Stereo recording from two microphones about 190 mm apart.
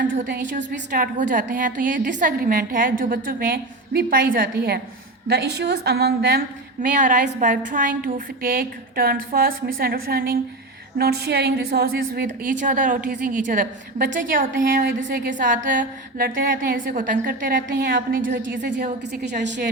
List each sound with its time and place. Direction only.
0.5 s a woman's voice: 50° right (ahead or behind)
7.0 s a woman's voice: 40° right (ahead or behind)
18.2 s a woman's voice: 70° right (ahead or behind)